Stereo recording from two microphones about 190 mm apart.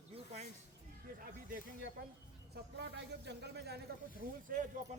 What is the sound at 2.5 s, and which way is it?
A man's voice, 60° right (ahead or behind).